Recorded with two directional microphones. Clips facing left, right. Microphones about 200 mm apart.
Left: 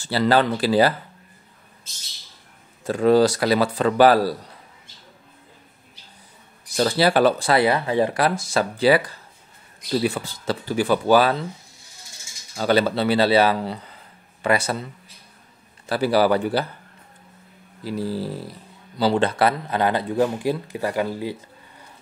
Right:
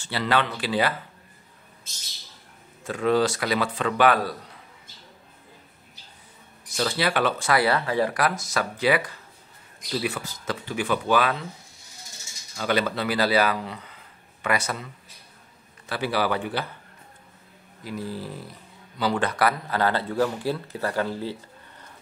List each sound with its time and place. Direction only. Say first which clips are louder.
0.0 s speech: left 6 dB; 35° left (ahead or behind)
2.8 s speech: left 6 dB; 35° left (ahead or behind)
6.8 s speech: left 7 dB; 35° left (ahead or behind)
7.6 s speech: left 3 dB; 20° left (ahead or behind)
12.5 s speech: left 5 dB; 35° left (ahead or behind)
15.9 s speech: left 7 dB; 40° left (ahead or behind)
17.8 s speech: left 6 dB; 35° left (ahead or behind); by 21.8 s 10° left (ahead or behind)